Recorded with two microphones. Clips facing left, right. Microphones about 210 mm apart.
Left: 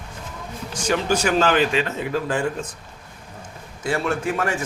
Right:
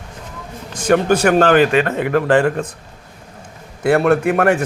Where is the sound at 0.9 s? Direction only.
55° right (ahead or behind).